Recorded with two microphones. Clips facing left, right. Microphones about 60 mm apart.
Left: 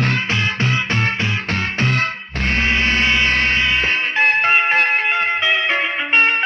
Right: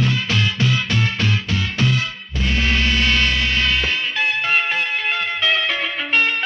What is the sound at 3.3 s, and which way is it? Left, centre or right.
Music, left.